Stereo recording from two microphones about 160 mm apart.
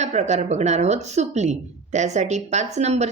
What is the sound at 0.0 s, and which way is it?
Speech, 45° right (ahead or behind).